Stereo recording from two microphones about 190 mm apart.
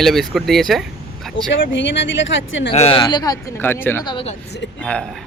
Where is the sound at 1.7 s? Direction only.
75° left (ahead or behind).